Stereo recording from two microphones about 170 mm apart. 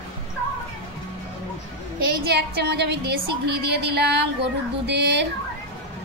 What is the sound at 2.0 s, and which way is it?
A woman's voice, 70° right (ahead or behind).